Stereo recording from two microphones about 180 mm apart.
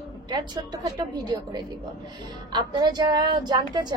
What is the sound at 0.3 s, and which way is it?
Speech, 25° right (ahead or behind).